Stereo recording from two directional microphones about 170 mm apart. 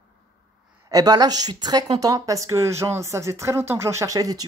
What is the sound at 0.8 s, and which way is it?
A woman's voice, 20° right (ahead or behind).